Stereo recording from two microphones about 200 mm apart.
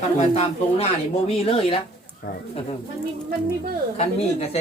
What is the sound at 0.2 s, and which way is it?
Speech, 30° left (ahead or behind).